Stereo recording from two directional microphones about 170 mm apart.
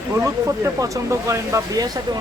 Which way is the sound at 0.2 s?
20° right (ahead or behind).